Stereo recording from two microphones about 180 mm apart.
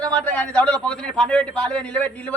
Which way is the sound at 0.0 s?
5° left (ahead or behind).